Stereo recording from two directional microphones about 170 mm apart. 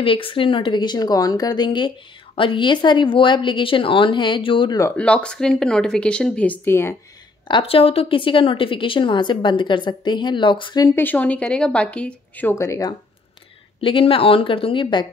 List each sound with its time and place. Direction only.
0.0 s a woman's voice: 30° left (ahead or behind)
4.9 s speech: 5° left (ahead or behind)
7.4 s a woman's voice: 30° left (ahead or behind)
11.0 s speech: 10° left (ahead or behind)
13.7 s a woman's voice: 30° left (ahead or behind)